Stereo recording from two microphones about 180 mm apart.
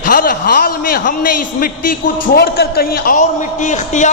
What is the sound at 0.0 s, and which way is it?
A man's voice, 50° left (ahead or behind).